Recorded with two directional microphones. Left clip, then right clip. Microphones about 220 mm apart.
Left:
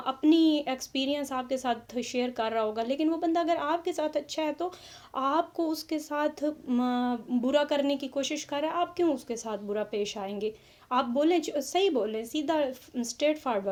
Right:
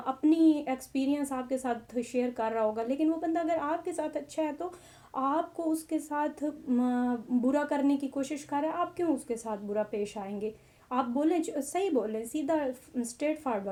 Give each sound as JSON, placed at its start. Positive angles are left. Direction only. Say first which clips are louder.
{"t": 0.0, "sound": "speech", "louder": "left 1 dB", "side_deg": 30}